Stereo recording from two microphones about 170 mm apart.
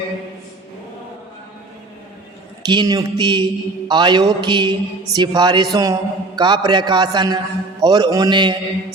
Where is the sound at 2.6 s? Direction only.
25° right (ahead or behind).